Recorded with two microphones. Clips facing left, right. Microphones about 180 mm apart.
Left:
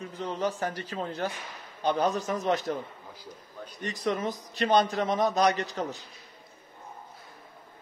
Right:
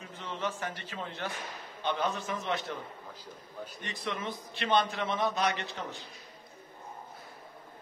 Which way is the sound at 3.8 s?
40° left (ahead or behind).